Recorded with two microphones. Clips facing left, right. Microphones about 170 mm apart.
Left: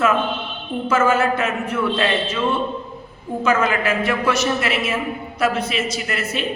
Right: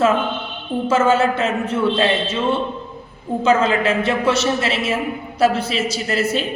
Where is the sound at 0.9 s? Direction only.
25° right (ahead or behind).